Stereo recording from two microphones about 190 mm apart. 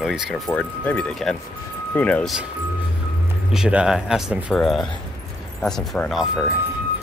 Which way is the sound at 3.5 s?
5° right (ahead or behind).